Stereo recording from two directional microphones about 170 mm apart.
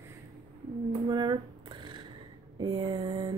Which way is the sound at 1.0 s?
25° right (ahead or behind).